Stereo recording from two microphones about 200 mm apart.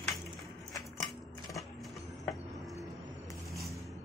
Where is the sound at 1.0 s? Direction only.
Centre (ahead or behind).